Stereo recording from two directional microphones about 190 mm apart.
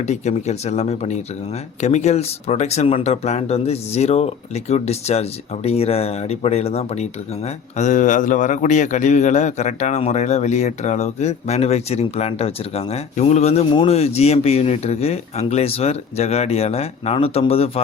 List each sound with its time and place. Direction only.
0.0 s speech: 35° left (ahead or behind)